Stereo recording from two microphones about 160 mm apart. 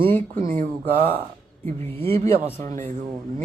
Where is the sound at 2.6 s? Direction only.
60° right (ahead or behind).